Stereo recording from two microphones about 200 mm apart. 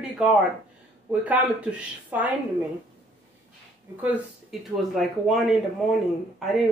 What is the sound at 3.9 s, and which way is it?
Speech, 10° right (ahead or behind).